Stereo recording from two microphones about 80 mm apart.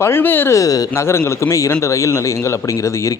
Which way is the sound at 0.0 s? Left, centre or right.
Left.